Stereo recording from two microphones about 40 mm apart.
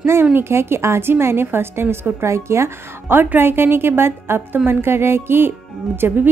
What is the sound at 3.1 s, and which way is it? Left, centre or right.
A woman's voice, right.